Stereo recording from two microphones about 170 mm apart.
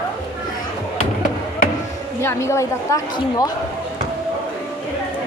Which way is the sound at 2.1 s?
15° left (ahead or behind).